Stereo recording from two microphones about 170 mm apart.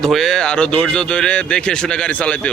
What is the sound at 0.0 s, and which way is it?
Speech, centre (ahead or behind).